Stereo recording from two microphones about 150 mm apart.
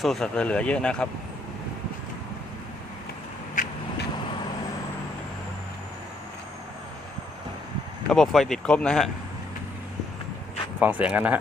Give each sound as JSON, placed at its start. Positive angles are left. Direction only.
{"t": 0.0, "sound": "speech", "side_deg": 0}
{"t": 3.5, "sound": "vehicle", "side_deg": 60}
{"t": 8.1, "sound": "speech", "side_deg": 0}
{"t": 10.8, "sound": "speech", "side_deg": -10}